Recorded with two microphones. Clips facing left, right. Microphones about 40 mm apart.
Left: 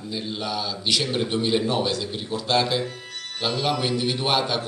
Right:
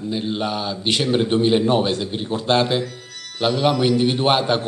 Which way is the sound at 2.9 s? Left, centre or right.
Left.